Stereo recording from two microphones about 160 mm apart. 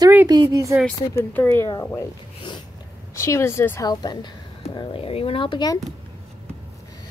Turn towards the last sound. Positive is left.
turn(degrees=25)  # may be behind; listen again after turning